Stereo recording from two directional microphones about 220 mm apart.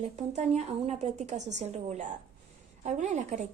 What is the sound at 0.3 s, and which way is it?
A woman's voice, 30° right (ahead or behind).